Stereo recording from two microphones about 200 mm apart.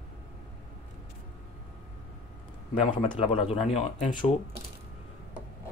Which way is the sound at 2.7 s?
25° left (ahead or behind).